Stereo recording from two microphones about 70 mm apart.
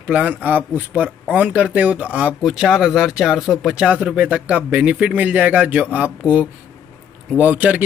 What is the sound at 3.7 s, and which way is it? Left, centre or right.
Speech, centre.